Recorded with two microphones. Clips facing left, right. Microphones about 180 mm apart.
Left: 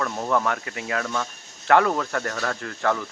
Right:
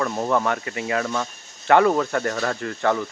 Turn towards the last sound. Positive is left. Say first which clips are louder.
# right 3 dB
turn(degrees=-5)  # may be behind; listen again after turning